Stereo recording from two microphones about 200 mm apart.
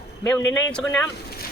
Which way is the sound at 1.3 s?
50° left (ahead or behind).